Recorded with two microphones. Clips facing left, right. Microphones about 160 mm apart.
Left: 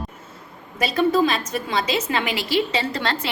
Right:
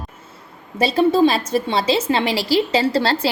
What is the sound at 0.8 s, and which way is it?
A woman's voice, 30° right (ahead or behind).